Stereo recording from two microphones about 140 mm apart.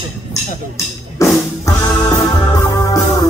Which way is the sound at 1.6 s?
15° left (ahead or behind).